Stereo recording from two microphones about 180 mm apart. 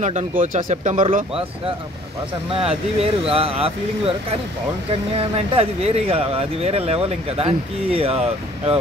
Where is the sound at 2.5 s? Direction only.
30° right (ahead or behind).